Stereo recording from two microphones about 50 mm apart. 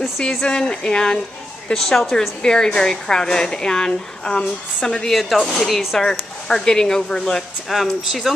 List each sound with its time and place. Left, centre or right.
0.3 s a woman's voice: centre
5.9 s a woman's voice: centre
7.7 s speech: centre